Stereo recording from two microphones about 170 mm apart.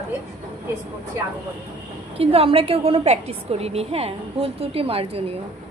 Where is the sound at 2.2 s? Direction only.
35° right (ahead or behind).